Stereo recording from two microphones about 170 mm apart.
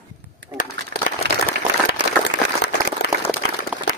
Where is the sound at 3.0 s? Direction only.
75° left (ahead or behind).